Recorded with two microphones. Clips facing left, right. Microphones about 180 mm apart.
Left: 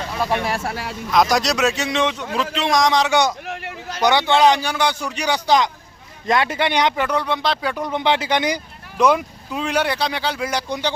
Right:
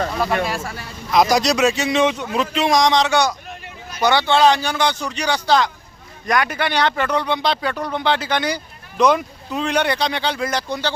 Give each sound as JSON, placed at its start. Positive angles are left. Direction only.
{"t": 0.5, "sound": "speech", "side_deg": 65}
{"t": 1.1, "sound": "speech", "side_deg": 0}
{"t": 3.4, "sound": "a sound", "side_deg": 80}
{"t": 4.0, "sound": "speech", "side_deg": 15}
{"t": 7.8, "sound": "speech", "side_deg": 20}